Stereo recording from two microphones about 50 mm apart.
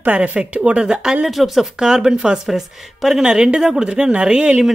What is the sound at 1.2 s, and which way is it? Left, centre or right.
Speech, centre.